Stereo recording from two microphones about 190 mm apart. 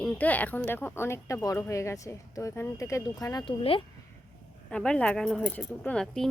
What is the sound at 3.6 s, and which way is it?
Speech, 30° left (ahead or behind).